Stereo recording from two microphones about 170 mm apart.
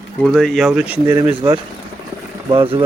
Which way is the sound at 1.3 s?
30° right (ahead or behind).